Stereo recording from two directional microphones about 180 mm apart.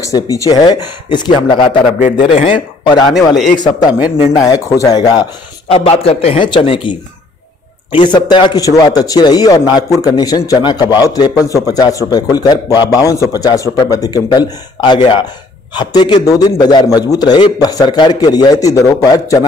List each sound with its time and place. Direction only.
0.0 s a man's voice: 20° left (ahead or behind)
5.7 s a man's voice: 35° left (ahead or behind)